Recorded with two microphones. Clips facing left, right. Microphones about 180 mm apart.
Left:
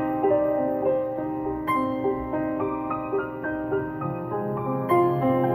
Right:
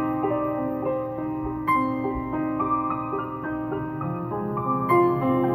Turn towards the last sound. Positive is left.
turn(degrees=35)  # may be behind; listen again after turning